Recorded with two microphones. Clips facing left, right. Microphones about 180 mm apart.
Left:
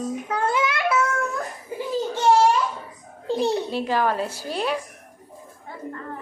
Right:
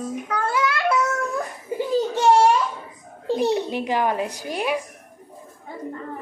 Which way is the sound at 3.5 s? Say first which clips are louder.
Right 1 dB; 15° right (ahead or behind).